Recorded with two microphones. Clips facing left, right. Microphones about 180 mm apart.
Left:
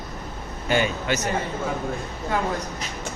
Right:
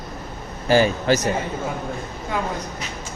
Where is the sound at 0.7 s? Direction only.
35° right (ahead or behind).